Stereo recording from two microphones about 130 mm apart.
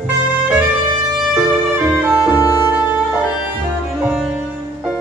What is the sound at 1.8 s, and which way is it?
Music, 10° right (ahead or behind).